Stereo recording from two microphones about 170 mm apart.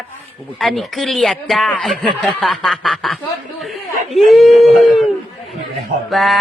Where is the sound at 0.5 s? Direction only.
Centre (ahead or behind).